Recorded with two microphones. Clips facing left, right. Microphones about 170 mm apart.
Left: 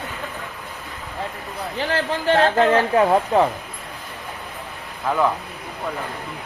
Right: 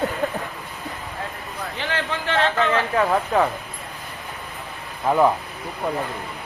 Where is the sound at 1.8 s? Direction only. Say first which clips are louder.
Left 5 dB; 40° left (ahead or behind).